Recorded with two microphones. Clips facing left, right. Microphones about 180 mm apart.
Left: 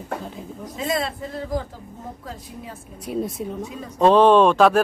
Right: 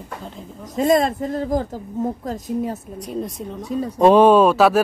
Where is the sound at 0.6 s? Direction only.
45° right (ahead or behind).